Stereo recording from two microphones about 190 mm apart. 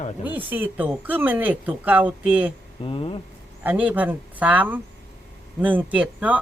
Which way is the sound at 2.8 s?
30° left (ahead or behind).